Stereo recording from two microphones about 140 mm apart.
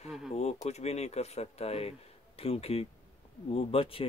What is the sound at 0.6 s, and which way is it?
Speech, 50° left (ahead or behind).